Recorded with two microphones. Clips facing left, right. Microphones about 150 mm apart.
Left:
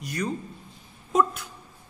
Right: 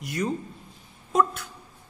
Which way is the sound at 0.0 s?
20° right (ahead or behind).